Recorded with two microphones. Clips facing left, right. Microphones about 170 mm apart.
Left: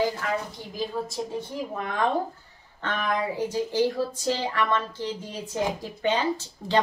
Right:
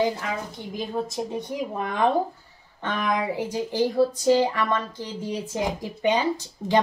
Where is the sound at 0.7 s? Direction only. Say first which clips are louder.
Right 2 dB; 20° right (ahead or behind).